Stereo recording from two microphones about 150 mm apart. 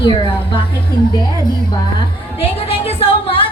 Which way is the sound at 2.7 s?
40° left (ahead or behind).